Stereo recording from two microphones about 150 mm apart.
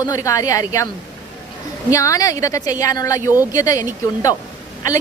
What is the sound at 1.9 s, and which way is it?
A woman's voice, 20° left (ahead or behind).